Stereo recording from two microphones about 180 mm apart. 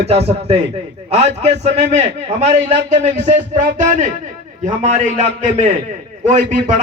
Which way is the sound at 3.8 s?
40° right (ahead or behind).